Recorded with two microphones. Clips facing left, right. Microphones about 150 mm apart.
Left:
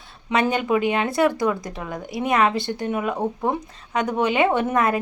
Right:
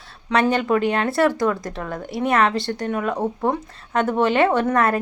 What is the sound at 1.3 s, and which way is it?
Speech, 20° left (ahead or behind).